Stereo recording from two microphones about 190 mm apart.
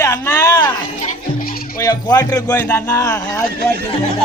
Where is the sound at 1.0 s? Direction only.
50° left (ahead or behind).